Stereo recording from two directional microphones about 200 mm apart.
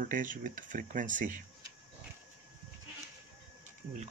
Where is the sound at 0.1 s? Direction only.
40° right (ahead or behind).